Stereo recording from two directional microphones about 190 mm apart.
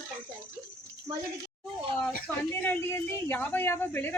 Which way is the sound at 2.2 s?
10° left (ahead or behind).